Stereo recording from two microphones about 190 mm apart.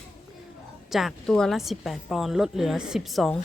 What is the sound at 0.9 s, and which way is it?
A woman's voice, centre (ahead or behind).